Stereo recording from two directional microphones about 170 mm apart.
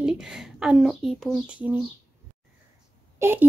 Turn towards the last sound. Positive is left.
turn(degrees=-15)  # may be behind; listen again after turning